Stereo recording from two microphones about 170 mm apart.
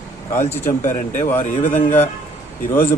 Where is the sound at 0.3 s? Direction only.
15° left (ahead or behind).